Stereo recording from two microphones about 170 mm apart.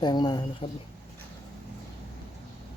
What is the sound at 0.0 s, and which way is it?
Speech, 25° left (ahead or behind).